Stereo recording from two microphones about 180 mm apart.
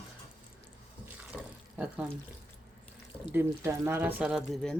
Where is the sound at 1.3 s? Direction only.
10° right (ahead or behind).